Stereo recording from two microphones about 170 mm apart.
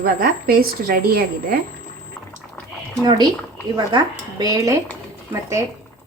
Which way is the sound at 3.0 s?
25° right (ahead or behind).